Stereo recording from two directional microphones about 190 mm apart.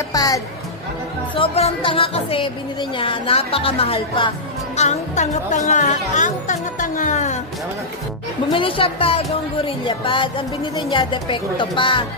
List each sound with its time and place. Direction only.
0.1 s music: 20° left (ahead or behind)
1.3 s a woman's voice: 30° left (ahead or behind)
8.5 s a woman's voice: 25° left (ahead or behind)